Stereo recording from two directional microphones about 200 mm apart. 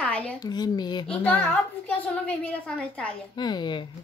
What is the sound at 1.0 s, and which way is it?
A child's voice, 5° left (ahead or behind).